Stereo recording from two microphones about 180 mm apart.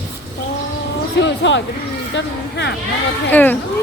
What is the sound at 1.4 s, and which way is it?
Speech, 85° left.